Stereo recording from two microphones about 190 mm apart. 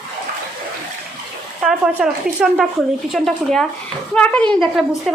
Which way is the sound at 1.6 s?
5° right (ahead or behind).